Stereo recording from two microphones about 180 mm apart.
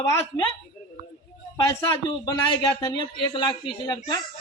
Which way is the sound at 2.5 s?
25° left (ahead or behind).